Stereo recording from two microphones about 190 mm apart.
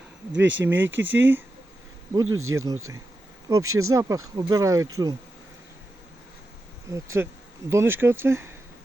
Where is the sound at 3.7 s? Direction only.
90° right.